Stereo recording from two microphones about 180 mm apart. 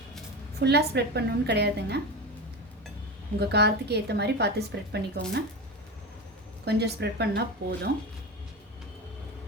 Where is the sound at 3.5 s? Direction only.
65° right (ahead or behind).